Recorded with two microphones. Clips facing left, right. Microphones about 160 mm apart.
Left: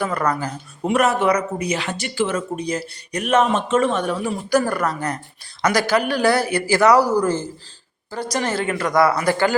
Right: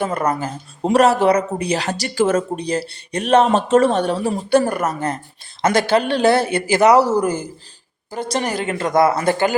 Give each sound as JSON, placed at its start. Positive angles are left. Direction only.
{"t": 0.0, "sound": "speech", "side_deg": -20}
{"t": 0.9, "sound": "speech", "side_deg": -35}